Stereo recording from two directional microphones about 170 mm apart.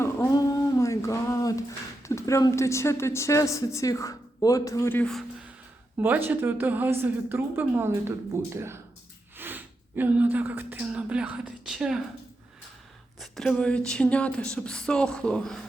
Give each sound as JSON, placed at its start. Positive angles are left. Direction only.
{"t": 0.0, "sound": "a sound", "side_deg": 15}
{"t": 2.0, "sound": "speech", "side_deg": 15}
{"t": 6.0, "sound": "a woman's voice", "side_deg": -10}
{"t": 13.1, "sound": "speech", "side_deg": 0}